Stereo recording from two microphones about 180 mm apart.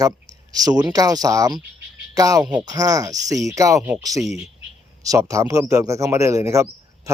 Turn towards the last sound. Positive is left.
turn(degrees=-15)  # may be behind; listen again after turning